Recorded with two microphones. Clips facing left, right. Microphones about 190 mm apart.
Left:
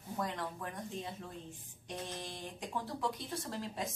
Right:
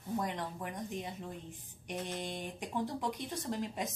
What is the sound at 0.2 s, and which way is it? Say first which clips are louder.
Speech: right 1 dB; 20° right (ahead or behind).